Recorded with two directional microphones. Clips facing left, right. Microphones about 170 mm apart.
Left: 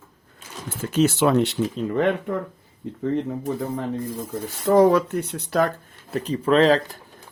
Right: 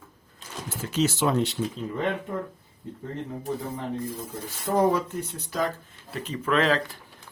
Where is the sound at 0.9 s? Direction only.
60° left (ahead or behind); by 2.3 s 75° left (ahead or behind).